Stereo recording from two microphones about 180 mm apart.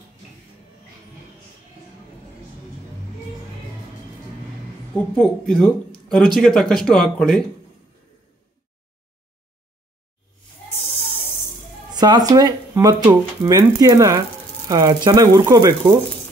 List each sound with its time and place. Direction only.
4.9 s speech: 5° left (ahead or behind)
11.9 s speech: 25° right (ahead or behind)